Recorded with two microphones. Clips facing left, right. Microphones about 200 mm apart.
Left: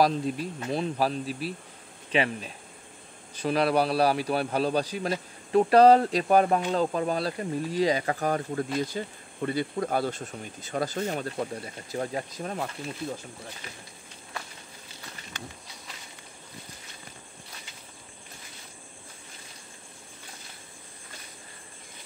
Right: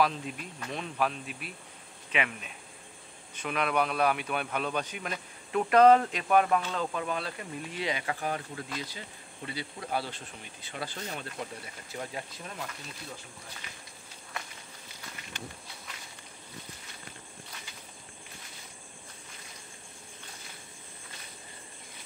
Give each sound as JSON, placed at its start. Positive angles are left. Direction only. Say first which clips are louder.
{"t": 0.0, "sound": "a man's voice", "louder": "left 5 dB", "side_deg": 35}